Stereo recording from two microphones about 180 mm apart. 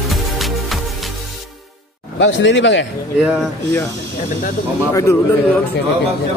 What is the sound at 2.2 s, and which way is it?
Speech, 85° left.